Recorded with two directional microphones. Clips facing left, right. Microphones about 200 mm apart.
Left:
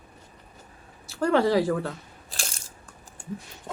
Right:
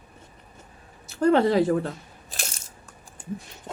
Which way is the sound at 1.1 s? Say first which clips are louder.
Right 2 dB; 20° right (ahead or behind).